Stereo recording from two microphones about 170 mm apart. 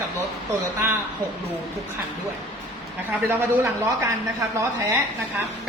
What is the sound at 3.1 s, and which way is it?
Speech, 15° right (ahead or behind).